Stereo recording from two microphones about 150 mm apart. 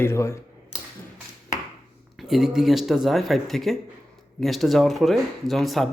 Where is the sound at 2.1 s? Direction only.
Centre (ahead or behind).